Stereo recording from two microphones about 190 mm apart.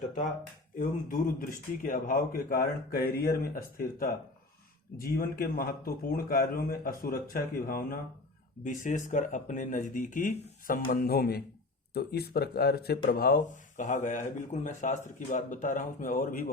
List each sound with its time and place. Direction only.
0.8 s speech: 45° left (ahead or behind)